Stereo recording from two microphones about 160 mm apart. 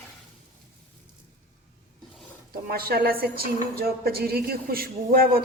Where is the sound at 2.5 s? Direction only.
70° right (ahead or behind).